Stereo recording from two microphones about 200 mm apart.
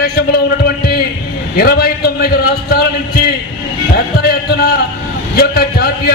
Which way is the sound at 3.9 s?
50° left (ahead or behind).